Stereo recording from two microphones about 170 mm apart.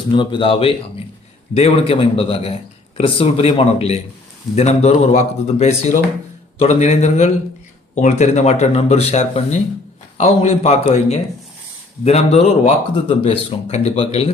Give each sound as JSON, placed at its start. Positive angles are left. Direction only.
{"t": 0.1, "sound": "a man's voice", "side_deg": 30}